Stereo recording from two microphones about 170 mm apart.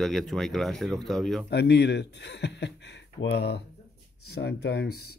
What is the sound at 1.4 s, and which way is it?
Speech, 80° left.